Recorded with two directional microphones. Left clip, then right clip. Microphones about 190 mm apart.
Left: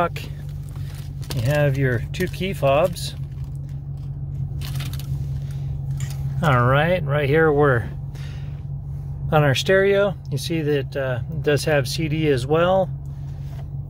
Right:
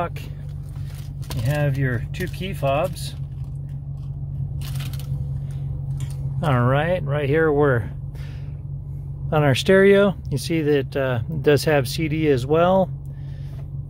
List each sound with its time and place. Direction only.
1.4 s speech: 25° left (ahead or behind)
6.4 s speech: 5° right (ahead or behind)
9.3 s speech: 20° right (ahead or behind)